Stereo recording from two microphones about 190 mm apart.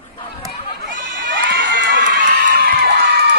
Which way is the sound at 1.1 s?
70° right (ahead or behind).